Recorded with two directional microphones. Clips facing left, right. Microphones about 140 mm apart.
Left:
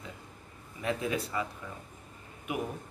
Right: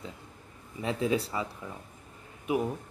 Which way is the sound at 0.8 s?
30° right (ahead or behind).